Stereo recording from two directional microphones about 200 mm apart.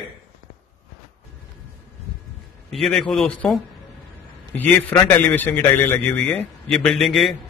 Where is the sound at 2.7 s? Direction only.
Centre (ahead or behind).